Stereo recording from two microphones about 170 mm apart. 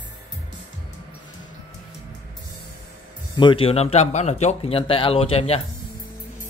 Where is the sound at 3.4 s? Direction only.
30° left (ahead or behind).